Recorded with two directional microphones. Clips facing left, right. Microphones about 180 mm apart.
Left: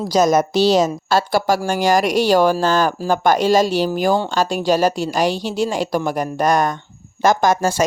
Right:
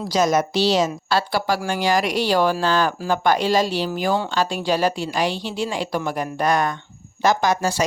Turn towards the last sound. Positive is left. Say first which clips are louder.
# left 4 dB
turn(degrees=50)  # may be behind; listen again after turning